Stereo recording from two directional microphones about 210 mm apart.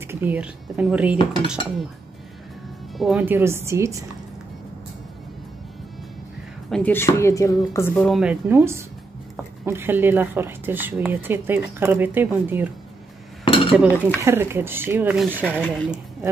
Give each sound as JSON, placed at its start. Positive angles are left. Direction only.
{"t": 0.0, "sound": "speech", "side_deg": -10}
{"t": 1.1, "sound": "dishes", "side_deg": 20}
{"t": 3.0, "sound": "speech", "side_deg": -5}
{"t": 6.7, "sound": "speech", "side_deg": 10}
{"t": 13.5, "sound": "dishes", "side_deg": 25}
{"t": 13.7, "sound": "speech", "side_deg": -10}